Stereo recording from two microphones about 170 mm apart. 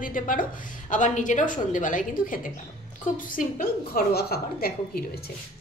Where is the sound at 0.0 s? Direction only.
50° left (ahead or behind).